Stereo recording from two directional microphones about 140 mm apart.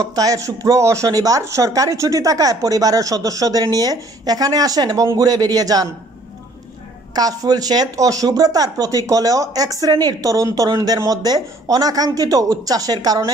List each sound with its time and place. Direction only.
0.0 s speech: 25° right (ahead or behind)
7.2 s speech: 25° right (ahead or behind)